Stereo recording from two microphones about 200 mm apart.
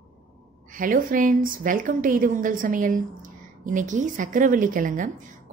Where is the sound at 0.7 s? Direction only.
45° right (ahead or behind).